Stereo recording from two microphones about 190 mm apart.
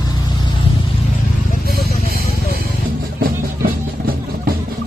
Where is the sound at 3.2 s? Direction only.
50° right (ahead or behind).